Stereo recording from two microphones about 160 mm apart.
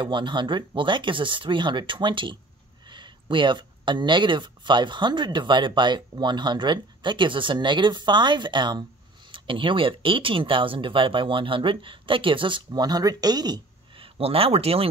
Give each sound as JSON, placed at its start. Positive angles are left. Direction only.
{"t": 0.0, "sound": "speech", "side_deg": -30}